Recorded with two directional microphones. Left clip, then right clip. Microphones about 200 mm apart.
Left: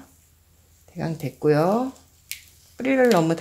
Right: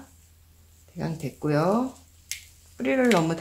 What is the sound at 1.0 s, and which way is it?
Speech, 45° left (ahead or behind).